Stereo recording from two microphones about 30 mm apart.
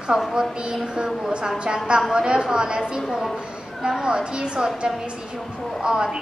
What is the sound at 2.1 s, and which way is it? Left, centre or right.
Speech, right.